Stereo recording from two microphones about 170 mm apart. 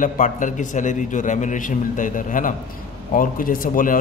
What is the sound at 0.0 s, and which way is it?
A man's voice, 50° left (ahead or behind).